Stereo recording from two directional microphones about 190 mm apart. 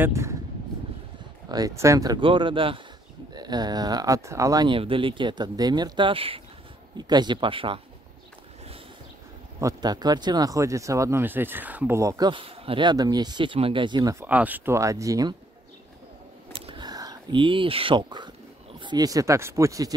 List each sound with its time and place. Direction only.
0.0 s speech: 15° right (ahead or behind)
1.5 s speech: 15° right (ahead or behind)
9.6 s speech: 20° right (ahead or behind)
14.2 s speech: 10° right (ahead or behind)
16.5 s a sound: 25° right (ahead or behind)
18.8 s speech: 20° right (ahead or behind)